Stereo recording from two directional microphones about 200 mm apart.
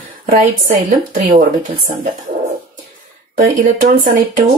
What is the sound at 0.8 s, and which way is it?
Speech, 40° right (ahead or behind).